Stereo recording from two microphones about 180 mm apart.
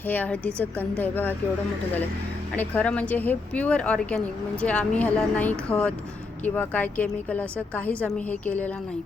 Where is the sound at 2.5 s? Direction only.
10° left (ahead or behind).